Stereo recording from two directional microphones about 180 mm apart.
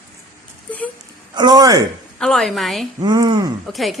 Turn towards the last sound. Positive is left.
turn(degrees=0)  # may be behind; listen again after turning